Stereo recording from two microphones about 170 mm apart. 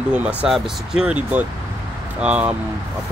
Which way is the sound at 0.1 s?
10° right (ahead or behind).